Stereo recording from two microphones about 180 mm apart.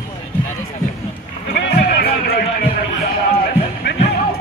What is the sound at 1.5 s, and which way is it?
Music, 60° left (ahead or behind).